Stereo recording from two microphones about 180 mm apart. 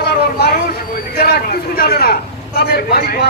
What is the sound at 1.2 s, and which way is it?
A man's voice, 60° left (ahead or behind).